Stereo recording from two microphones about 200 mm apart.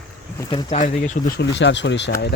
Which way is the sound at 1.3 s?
65° left (ahead or behind).